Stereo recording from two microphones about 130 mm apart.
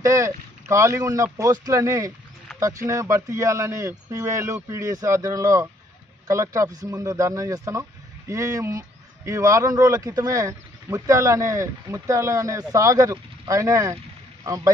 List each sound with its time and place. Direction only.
0.0 s speech: 25° right (ahead or behind)